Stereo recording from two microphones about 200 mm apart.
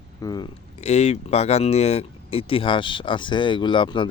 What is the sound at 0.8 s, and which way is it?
Speech, 35° left (ahead or behind).